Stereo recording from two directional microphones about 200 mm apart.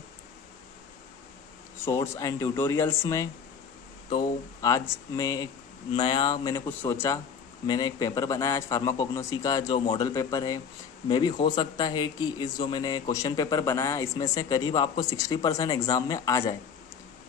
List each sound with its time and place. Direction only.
1.9 s a man's voice: 15° left (ahead or behind)